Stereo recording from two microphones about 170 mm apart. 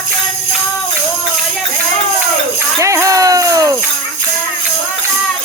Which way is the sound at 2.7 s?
20° right (ahead or behind).